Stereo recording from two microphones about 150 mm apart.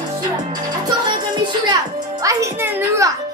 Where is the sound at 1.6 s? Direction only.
25° right (ahead or behind).